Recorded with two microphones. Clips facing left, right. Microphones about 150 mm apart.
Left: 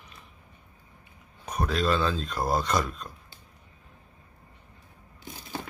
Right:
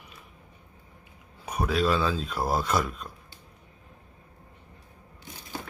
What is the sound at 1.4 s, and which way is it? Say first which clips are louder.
Speech: right 1 dB; 5° right (ahead or behind).